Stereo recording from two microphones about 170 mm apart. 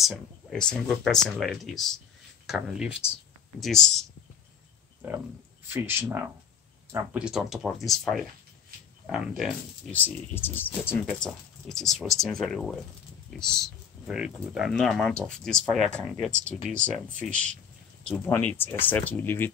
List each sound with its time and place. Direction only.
0.0 s speech: centre (ahead or behind)
5.0 s speech: 10° right (ahead or behind)
7.2 s speech: centre (ahead or behind)
9.8 s speech: 10° left (ahead or behind)